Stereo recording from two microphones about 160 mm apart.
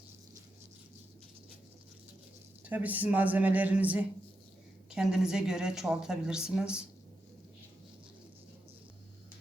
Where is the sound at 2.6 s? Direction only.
10° right (ahead or behind).